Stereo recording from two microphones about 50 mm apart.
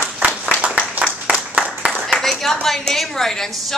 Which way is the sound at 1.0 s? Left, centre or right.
Right.